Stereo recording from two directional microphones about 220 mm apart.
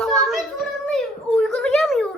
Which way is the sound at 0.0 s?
Centre (ahead or behind).